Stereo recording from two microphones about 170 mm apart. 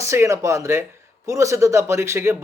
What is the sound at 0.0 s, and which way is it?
Speech, 15° right (ahead or behind).